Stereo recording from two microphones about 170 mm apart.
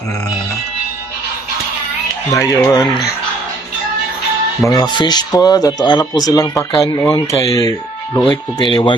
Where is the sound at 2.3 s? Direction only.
20° left (ahead or behind).